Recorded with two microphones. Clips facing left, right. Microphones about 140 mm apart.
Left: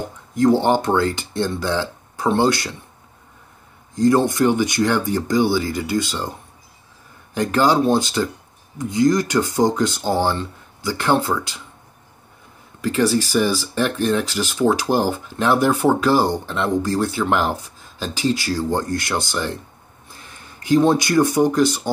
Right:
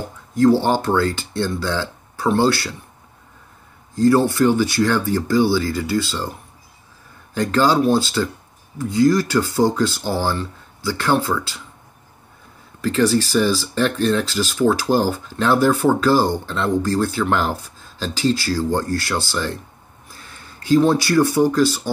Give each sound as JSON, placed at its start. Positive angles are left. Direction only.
{"t": 0.3, "sound": "speech", "side_deg": 20}
{"t": 3.9, "sound": "speech", "side_deg": 20}
{"t": 7.3, "sound": "speech", "side_deg": 15}
{"t": 12.8, "sound": "speech", "side_deg": 15}